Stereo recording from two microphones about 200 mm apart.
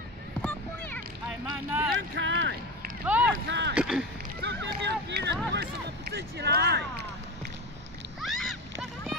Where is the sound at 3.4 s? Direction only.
60° right (ahead or behind).